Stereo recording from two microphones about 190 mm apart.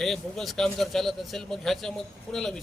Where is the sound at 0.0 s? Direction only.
Centre (ahead or behind).